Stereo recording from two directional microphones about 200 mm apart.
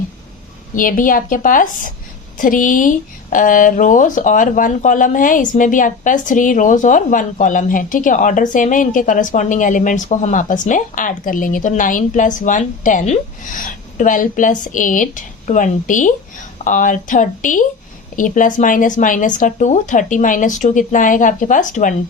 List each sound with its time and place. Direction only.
0.8 s a woman's voice: 45° left (ahead or behind)